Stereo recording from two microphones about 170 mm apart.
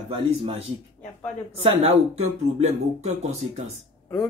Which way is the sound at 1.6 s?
35° right (ahead or behind).